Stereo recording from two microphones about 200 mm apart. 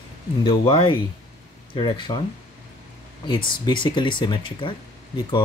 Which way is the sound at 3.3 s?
25° left (ahead or behind).